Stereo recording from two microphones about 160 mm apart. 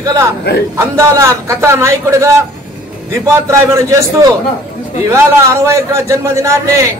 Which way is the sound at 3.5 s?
20° right (ahead or behind).